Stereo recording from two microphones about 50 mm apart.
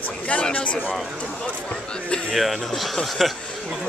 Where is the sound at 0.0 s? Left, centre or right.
Left.